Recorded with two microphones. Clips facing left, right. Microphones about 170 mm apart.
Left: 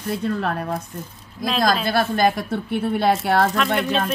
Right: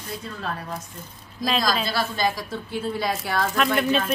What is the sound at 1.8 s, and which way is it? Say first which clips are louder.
A woman's voice: left 6 dB; 55° left (ahead or behind).